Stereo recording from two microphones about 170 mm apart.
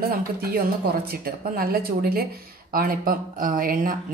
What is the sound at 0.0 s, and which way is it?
Speech, 65° right (ahead or behind).